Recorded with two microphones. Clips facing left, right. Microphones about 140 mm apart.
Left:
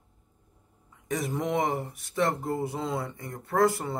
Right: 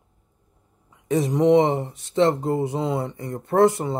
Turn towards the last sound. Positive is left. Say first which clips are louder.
# right 7 dB
turn(degrees=-20)  # may be behind; listen again after turning